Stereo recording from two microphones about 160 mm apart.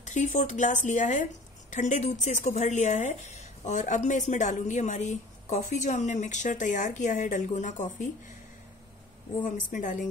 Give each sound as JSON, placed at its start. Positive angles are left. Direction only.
{"t": 0.0, "sound": "speech", "side_deg": 50}
{"t": 9.4, "sound": "speech", "side_deg": 55}